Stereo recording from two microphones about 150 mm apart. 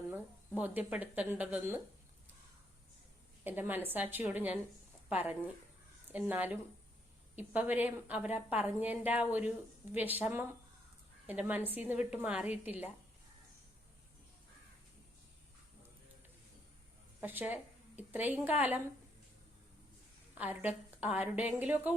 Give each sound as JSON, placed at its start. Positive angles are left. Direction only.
{"t": 0.6, "sound": "a woman's voice", "side_deg": -10}
{"t": 3.4, "sound": "a woman's voice", "side_deg": -10}
{"t": 17.2, "sound": "a woman's voice", "side_deg": -10}
{"t": 20.3, "sound": "a woman's voice", "side_deg": -10}